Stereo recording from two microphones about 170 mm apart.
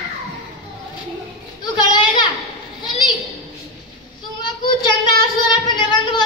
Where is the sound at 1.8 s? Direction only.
25° left (ahead or behind).